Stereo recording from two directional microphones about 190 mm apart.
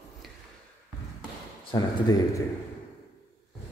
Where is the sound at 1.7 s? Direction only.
20° left (ahead or behind).